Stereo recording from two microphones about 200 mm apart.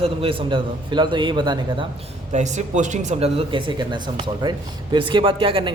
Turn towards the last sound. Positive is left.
turn(degrees=-25)  # may be behind; listen again after turning